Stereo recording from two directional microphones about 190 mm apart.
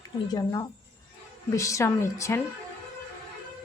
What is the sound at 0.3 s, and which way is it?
A woman's voice, 20° left (ahead or behind).